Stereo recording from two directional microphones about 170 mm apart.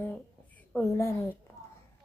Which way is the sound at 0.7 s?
15° left (ahead or behind).